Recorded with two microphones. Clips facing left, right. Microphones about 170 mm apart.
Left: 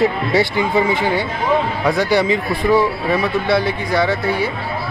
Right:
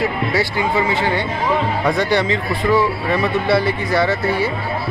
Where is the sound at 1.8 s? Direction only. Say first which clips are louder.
Left 2 dB; 5° left (ahead or behind).